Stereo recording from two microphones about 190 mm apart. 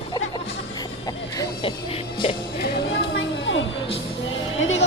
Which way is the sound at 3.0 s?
85° left.